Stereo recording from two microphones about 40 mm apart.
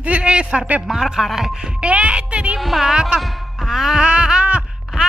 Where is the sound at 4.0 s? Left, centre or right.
Right.